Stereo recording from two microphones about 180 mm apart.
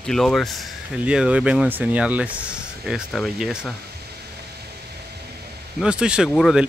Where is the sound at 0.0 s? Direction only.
Centre (ahead or behind).